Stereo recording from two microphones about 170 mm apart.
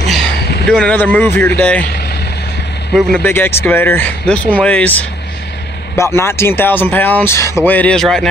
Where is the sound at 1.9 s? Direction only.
70° left (ahead or behind).